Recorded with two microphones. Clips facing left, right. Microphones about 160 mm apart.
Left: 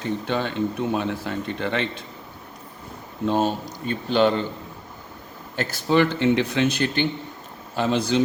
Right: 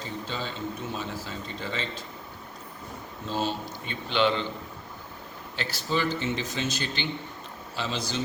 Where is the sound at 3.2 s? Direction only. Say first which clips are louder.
Left 8 dB; 55° left (ahead or behind).